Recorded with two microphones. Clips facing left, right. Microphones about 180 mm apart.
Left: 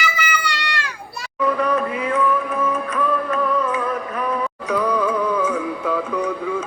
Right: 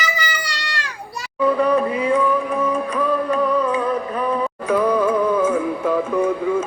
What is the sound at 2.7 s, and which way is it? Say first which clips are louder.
Music: right 2 dB; 35° right (ahead or behind).